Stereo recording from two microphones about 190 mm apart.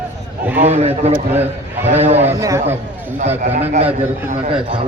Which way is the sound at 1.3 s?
10° right (ahead or behind).